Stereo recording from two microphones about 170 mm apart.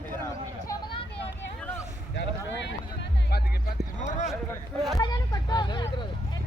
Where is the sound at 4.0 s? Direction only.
45° left (ahead or behind).